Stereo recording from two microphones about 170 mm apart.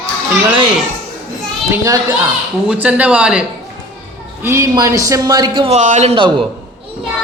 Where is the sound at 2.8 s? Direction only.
10° right (ahead or behind).